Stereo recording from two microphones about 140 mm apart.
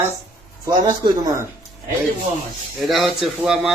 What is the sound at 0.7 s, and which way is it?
Speech, 30° right (ahead or behind).